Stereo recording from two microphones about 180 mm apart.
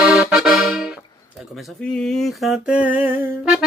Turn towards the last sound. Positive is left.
turn(degrees=-10)  # may be behind; listen again after turning